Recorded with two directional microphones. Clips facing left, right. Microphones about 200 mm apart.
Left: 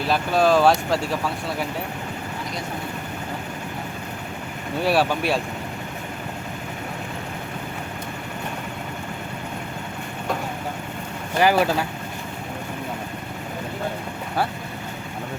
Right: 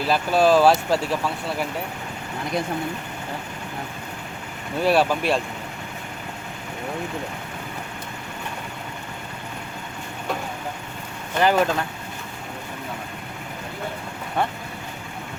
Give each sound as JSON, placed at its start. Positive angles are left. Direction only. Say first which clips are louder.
{"t": 0.0, "sound": "speech", "louder": "right 1 dB", "side_deg": 0}
{"t": 4.8, "sound": "speech", "louder": "right 1 dB", "side_deg": 0}
{"t": 11.3, "sound": "speech", "louder": "left 1 dB", "side_deg": 10}